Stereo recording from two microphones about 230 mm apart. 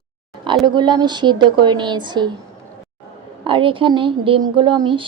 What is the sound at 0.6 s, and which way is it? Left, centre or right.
A woman's voice, centre.